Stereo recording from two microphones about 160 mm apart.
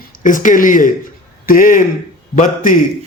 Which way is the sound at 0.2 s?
55° left (ahead or behind).